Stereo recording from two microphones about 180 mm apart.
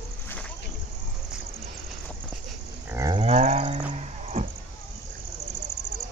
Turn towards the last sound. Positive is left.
turn(degrees=-40)  # may be behind; listen again after turning